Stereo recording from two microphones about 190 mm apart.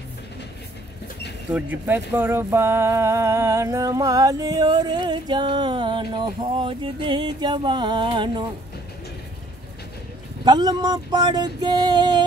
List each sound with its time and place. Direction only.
1.5 s speech: 10° right (ahead or behind); by 8.5 s 25° right (ahead or behind)
10.4 s speech: 20° right (ahead or behind)